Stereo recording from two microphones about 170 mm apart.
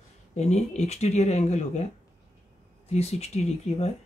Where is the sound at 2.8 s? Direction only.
40° left (ahead or behind).